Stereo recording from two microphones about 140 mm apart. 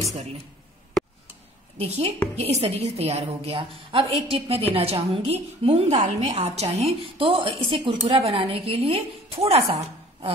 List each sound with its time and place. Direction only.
1.8 s a woman's voice: 45° right (ahead or behind)
5.9 s a woman's voice: 55° right (ahead or behind)